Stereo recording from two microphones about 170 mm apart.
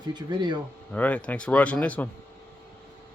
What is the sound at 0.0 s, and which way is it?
Speech, 25° right (ahead or behind).